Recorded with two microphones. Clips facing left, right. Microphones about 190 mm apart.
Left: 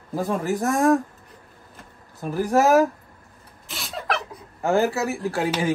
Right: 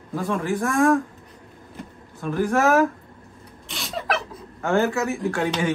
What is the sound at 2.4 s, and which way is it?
Speech, 35° left (ahead or behind).